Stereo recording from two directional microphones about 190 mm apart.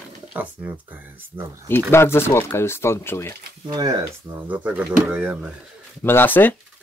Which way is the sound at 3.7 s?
20° right (ahead or behind).